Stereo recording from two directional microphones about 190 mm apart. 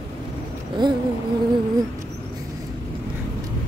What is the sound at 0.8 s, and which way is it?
Speech, 25° right (ahead or behind).